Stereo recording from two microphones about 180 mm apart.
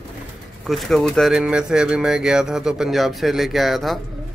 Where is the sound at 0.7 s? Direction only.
Centre (ahead or behind).